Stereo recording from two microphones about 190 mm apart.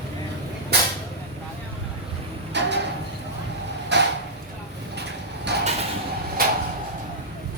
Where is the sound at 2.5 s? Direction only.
65° right (ahead or behind).